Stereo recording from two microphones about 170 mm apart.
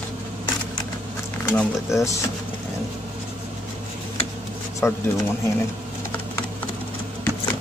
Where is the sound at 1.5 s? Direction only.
15° left (ahead or behind).